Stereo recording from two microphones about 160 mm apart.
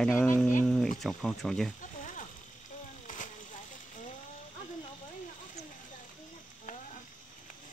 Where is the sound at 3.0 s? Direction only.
55° left (ahead or behind).